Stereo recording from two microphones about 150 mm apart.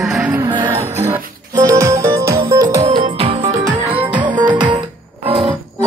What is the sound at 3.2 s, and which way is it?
Music, 40° right (ahead or behind).